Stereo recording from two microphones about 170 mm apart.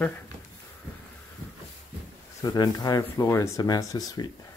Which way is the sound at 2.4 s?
25° left (ahead or behind).